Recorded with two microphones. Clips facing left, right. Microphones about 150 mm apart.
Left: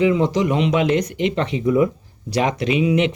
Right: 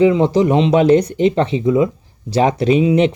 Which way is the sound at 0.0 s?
30° right (ahead or behind).